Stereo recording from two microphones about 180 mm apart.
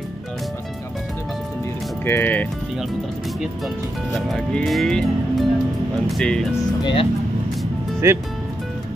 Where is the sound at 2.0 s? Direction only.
10° left (ahead or behind).